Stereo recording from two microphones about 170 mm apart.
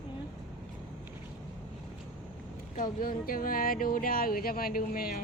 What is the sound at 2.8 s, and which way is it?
Speech, 55° left (ahead or behind).